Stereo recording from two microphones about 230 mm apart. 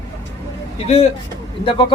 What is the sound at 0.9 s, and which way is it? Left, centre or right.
A man's voice, left.